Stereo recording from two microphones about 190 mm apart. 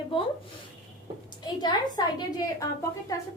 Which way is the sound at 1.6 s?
20° left (ahead or behind).